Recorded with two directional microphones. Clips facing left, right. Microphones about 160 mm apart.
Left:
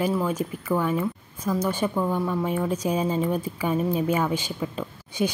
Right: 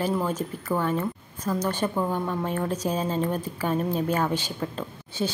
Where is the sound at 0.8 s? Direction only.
10° left (ahead or behind).